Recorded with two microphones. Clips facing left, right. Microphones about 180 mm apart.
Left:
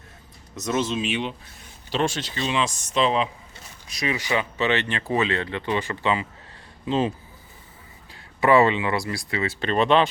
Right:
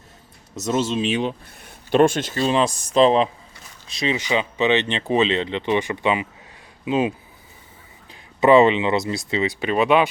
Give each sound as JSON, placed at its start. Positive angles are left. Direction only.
{"t": 0.7, "sound": "speech", "side_deg": -30}
{"t": 1.9, "sound": "speech", "side_deg": -50}
{"t": 3.8, "sound": "speech", "side_deg": -25}
{"t": 8.1, "sound": "speech", "side_deg": -20}